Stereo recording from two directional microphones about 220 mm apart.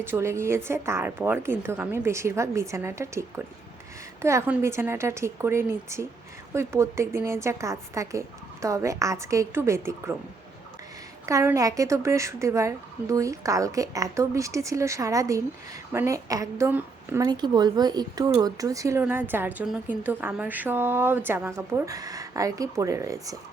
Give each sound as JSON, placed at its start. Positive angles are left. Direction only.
{"t": 0.0, "sound": "a woman's voice", "side_deg": -10}
{"t": 11.3, "sound": "a woman's voice", "side_deg": -15}